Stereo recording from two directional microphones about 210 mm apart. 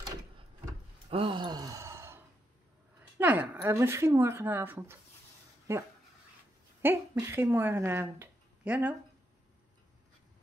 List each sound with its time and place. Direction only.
1.1 s sigh: 25° right (ahead or behind)
3.2 s speech: 10° right (ahead or behind)
6.8 s speech: 10° right (ahead or behind)